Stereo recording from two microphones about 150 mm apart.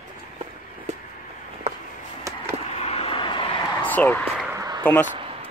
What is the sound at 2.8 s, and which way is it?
Vehicle, 40° left (ahead or behind).